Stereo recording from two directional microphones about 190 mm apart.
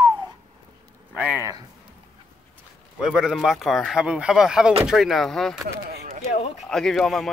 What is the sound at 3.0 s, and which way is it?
Speech, 5° right (ahead or behind).